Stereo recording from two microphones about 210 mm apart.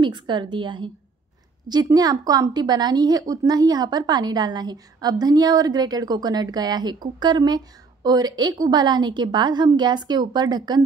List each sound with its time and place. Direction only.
0.0 s a woman's voice: 20° right (ahead or behind)